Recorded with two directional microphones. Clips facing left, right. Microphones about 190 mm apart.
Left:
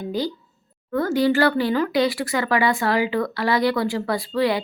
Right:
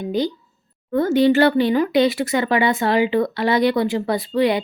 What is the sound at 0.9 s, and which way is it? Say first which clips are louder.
Speech: right 4 dB; 20° right (ahead or behind).